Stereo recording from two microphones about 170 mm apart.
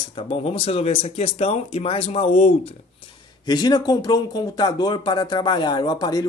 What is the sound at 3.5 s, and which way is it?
Speech, 25° left (ahead or behind).